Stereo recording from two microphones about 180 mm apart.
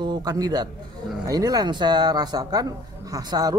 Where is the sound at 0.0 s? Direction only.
20° right (ahead or behind).